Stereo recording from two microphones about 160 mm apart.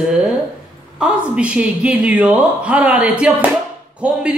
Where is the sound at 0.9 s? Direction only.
5° right (ahead or behind).